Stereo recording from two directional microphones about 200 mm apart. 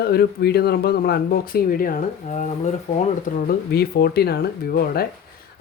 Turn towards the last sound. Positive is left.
turn(degrees=50)  # may be behind; listen again after turning